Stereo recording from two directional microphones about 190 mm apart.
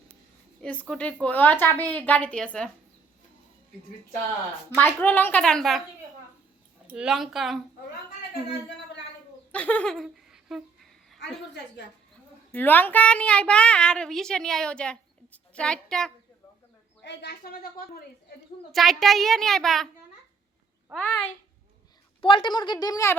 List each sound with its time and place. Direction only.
0.6 s a woman's voice: 5° left (ahead or behind)
4.8 s a woman's voice: 10° left (ahead or behind)
6.8 s speech: 5° right (ahead or behind)
9.5 s speech: 10° left (ahead or behind)
12.5 s speech: 10° left (ahead or behind)
17.0 s speech: 65° left (ahead or behind)
18.7 s speech: centre (ahead or behind)
20.9 s a woman's voice: 5° left (ahead or behind)
22.2 s a woman's voice: 25° left (ahead or behind)